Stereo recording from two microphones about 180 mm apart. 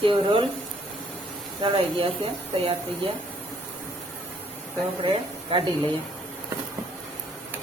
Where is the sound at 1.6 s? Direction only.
30° right (ahead or behind).